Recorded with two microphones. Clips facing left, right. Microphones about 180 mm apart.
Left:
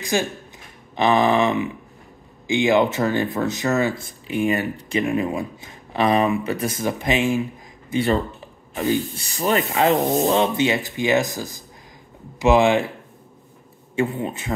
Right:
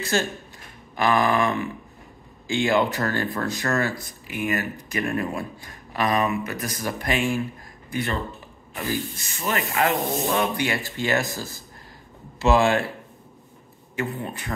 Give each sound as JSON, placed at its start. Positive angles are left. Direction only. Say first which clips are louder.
{"t": 0.0, "sound": "speech", "louder": "left 2 dB", "side_deg": 15}
{"t": 7.9, "sound": "speech", "louder": "left 7 dB", "side_deg": 30}
{"t": 13.9, "sound": "speech", "louder": "left 6 dB", "side_deg": 25}